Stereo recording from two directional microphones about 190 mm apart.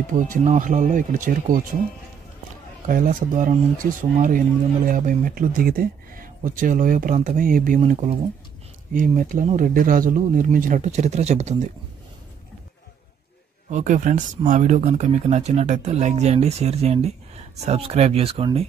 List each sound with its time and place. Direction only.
0.3 s speech: 40° right (ahead or behind)
2.9 s speech: 45° right (ahead or behind)
7.8 s speech: 35° right (ahead or behind)
8.9 s speech: 45° right (ahead or behind)
13.7 s speech: 40° right (ahead or behind)